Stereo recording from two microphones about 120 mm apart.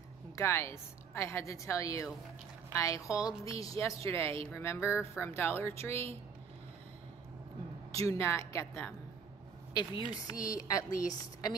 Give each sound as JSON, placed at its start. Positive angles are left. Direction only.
{"t": 0.4, "sound": "a woman's voice", "side_deg": 20}
{"t": 4.8, "sound": "speech", "side_deg": -10}
{"t": 5.2, "sound": "a woman's voice", "side_deg": 20}
{"t": 7.9, "sound": "a woman's voice", "side_deg": 25}
{"t": 9.8, "sound": "a woman's voice", "side_deg": 35}